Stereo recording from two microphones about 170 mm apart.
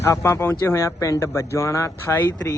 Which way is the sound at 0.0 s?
15° left (ahead or behind).